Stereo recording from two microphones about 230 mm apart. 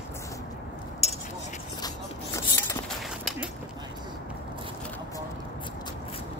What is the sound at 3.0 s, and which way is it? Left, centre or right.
Dog, centre.